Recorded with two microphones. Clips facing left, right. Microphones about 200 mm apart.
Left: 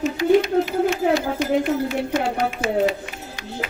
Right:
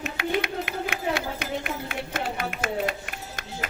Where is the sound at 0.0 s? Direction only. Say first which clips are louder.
Left 11 dB; 60° right (ahead or behind).